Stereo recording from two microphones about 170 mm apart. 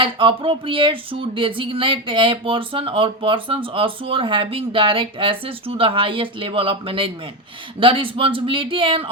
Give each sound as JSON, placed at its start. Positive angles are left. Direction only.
{"t": 0.0, "sound": "speech", "side_deg": -30}